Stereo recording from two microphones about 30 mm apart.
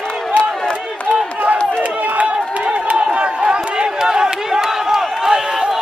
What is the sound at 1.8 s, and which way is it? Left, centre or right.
Crowd, right.